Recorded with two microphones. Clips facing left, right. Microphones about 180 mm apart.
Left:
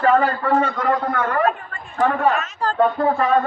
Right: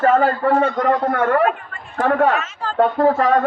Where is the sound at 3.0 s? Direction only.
85° right.